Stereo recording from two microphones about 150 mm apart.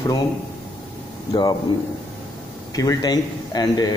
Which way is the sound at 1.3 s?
30° left (ahead or behind).